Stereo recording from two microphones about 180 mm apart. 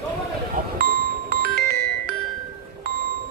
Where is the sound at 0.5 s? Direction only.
60° right (ahead or behind).